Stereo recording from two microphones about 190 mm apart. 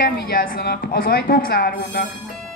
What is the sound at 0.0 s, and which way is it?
A woman's voice, 50° left (ahead or behind).